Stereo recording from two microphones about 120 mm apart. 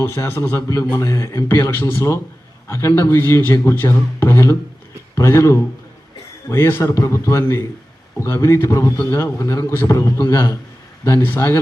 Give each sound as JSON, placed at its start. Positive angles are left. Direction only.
{"t": 0.0, "sound": "a man's voice", "side_deg": 20}